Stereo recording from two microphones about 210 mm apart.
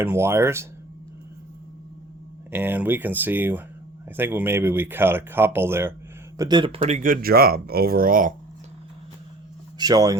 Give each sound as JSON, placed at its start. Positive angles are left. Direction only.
{"t": 0.0, "sound": "speech", "side_deg": -10}
{"t": 2.5, "sound": "speech", "side_deg": -10}
{"t": 9.7, "sound": "speech", "side_deg": -20}